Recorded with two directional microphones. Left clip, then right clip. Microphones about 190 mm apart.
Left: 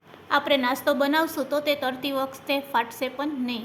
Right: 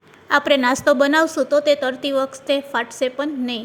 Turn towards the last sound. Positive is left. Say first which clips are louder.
# right 5 dB
turn(degrees=-30)  # may be behind; listen again after turning